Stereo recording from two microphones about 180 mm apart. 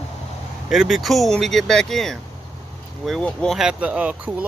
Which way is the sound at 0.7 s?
Centre (ahead or behind).